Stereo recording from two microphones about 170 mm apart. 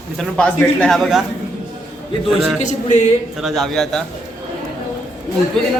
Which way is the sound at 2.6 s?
45° left (ahead or behind).